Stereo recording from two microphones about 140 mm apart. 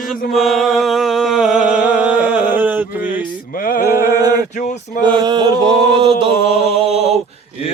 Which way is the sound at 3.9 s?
20° right (ahead or behind).